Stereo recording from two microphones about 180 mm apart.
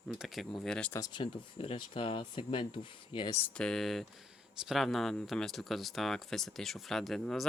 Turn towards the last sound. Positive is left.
turn(degrees=0)  # may be behind; listen again after turning